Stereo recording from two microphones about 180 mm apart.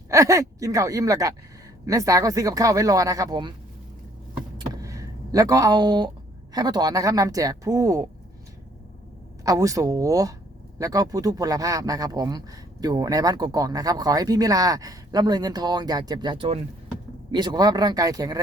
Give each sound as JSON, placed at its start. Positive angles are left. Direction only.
{"t": 0.1, "sound": "speech", "side_deg": -15}
{"t": 4.5, "sound": "a sound", "side_deg": -20}
{"t": 6.5, "sound": "speech", "side_deg": -20}
{"t": 9.4, "sound": "speech", "side_deg": -20}